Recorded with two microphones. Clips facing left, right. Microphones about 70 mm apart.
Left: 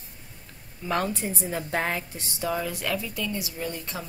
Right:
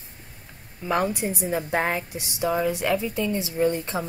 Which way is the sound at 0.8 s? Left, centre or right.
Centre.